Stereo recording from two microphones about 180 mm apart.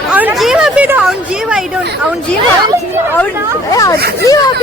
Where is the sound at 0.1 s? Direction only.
10° right (ahead or behind).